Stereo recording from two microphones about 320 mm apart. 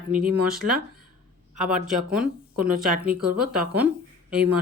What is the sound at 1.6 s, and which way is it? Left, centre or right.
Speech, right.